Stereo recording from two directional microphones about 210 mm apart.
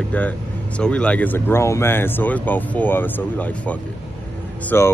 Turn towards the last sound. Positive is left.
turn(degrees=10)  # may be behind; listen again after turning